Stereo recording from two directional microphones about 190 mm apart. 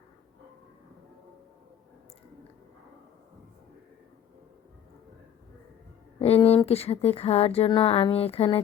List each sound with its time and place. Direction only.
6.1 s speech: 30° left (ahead or behind)